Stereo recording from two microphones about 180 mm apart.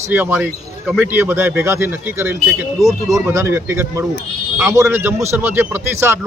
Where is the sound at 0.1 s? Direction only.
10° right (ahead or behind).